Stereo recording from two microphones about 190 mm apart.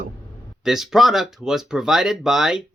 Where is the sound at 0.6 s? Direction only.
Centre (ahead or behind).